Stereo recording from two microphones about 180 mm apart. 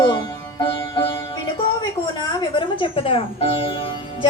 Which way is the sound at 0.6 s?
25° left (ahead or behind).